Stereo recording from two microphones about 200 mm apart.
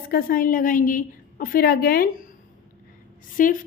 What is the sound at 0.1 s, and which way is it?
Speech, 45° left (ahead or behind).